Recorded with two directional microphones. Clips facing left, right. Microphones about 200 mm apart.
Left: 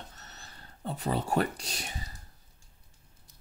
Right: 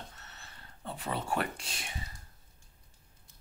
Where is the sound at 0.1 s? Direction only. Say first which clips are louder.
Left 2 dB; 40° left (ahead or behind).